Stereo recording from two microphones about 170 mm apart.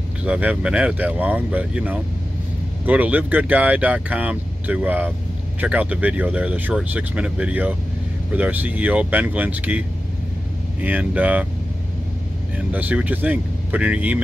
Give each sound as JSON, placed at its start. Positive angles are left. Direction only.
{"t": 0.2, "sound": "speech", "side_deg": -5}
{"t": 12.5, "sound": "speech", "side_deg": -10}